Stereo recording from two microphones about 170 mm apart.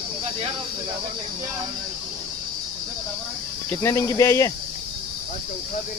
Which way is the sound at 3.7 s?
15° left (ahead or behind).